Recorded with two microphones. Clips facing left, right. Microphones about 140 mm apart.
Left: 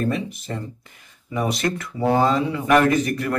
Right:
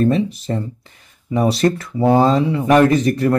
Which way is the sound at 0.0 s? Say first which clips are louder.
Right 8 dB; 30° right (ahead or behind).